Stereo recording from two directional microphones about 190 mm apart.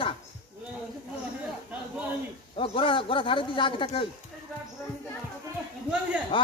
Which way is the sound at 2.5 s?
30° left (ahead or behind).